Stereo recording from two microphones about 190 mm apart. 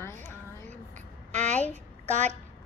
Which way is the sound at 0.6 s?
40° right (ahead or behind).